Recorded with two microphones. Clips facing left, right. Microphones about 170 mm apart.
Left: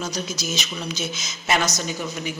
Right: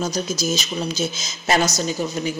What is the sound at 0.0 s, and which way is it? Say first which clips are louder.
Speech: right 5 dB; 40° right (ahead or behind).